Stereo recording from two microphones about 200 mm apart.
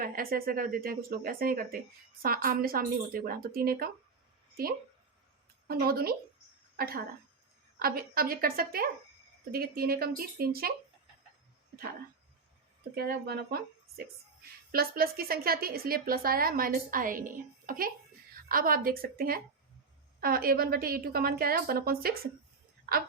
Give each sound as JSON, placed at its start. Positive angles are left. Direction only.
{"t": 0.0, "sound": "speech", "side_deg": -45}
{"t": 5.6, "sound": "a woman's voice", "side_deg": -50}
{"t": 12.9, "sound": "speech", "side_deg": -50}